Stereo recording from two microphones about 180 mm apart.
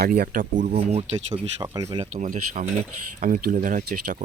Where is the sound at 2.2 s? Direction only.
45° right (ahead or behind).